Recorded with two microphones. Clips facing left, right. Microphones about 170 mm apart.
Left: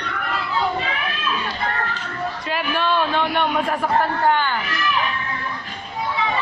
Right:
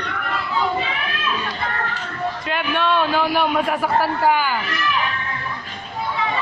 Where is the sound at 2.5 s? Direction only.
Centre (ahead or behind).